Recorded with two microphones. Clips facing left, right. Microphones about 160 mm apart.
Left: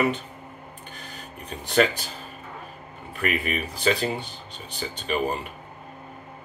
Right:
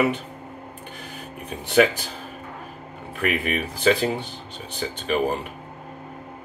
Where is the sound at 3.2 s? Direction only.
70° right (ahead or behind).